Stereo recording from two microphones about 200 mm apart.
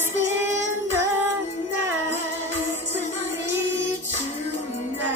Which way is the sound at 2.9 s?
40° left (ahead or behind).